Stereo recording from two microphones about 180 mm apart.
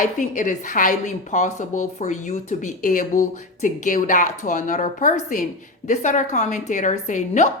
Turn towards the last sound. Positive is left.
turn(degrees=40)  # may be behind; listen again after turning